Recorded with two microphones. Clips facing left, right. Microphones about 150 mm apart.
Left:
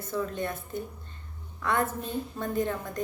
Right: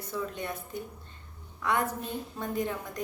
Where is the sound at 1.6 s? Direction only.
15° right (ahead or behind).